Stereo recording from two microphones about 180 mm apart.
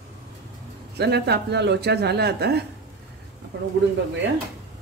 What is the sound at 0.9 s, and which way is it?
Speech, 65° right (ahead or behind).